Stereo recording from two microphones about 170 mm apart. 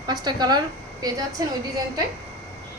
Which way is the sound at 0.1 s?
25° right (ahead or behind).